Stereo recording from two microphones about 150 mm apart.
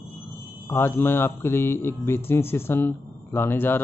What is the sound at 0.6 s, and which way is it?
A man's voice, 15° left (ahead or behind).